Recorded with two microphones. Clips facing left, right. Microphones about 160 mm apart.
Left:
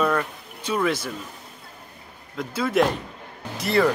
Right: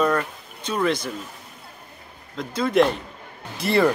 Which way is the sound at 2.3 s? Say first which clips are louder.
Right 2 dB; 5° left (ahead or behind).